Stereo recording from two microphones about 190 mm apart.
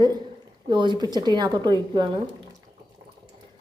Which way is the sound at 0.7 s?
25° right (ahead or behind).